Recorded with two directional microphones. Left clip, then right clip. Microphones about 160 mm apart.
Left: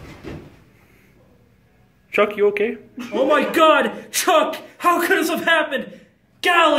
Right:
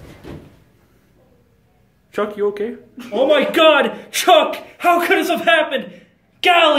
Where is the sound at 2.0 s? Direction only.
Centre (ahead or behind).